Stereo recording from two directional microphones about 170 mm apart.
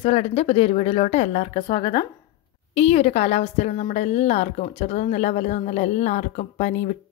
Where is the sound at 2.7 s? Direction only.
40° left (ahead or behind).